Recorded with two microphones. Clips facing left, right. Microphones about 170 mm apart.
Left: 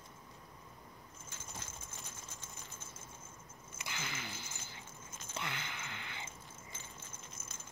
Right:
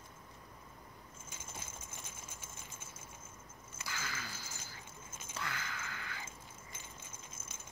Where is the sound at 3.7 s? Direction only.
20° left (ahead or behind).